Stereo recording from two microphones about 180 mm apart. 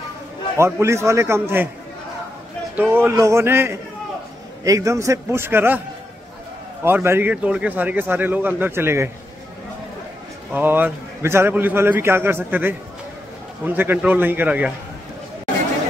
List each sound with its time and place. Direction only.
0.6 s a man's voice: 15° right (ahead or behind)
2.7 s a man's voice: 10° right (ahead or behind)
6.8 s a man's voice: 15° right (ahead or behind)
10.5 s a man's voice: 10° right (ahead or behind)